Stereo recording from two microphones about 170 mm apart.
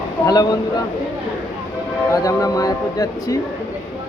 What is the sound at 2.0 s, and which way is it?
Speech, 20° left (ahead or behind).